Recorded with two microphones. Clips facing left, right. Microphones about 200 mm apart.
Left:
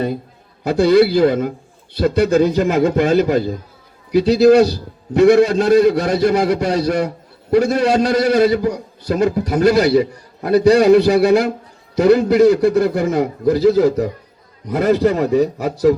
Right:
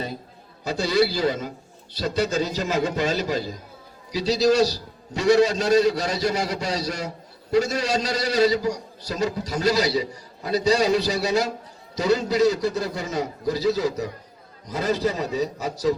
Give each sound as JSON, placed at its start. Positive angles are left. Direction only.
{"t": 0.6, "sound": "a man's voice", "side_deg": 55}